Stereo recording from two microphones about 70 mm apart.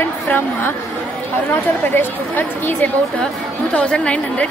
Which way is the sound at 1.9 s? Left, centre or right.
Left.